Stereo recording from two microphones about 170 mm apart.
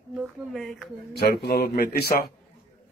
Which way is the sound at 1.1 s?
70° left (ahead or behind).